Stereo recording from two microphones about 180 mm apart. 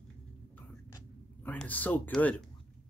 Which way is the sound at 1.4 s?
10° left (ahead or behind).